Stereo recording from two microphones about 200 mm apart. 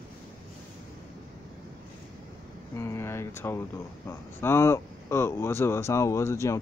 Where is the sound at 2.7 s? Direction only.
15° left (ahead or behind).